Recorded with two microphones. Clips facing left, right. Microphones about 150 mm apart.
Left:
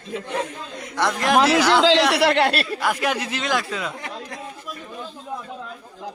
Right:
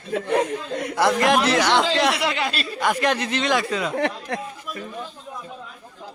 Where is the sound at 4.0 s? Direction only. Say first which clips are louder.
Right 9 dB; 70° right (ahead or behind).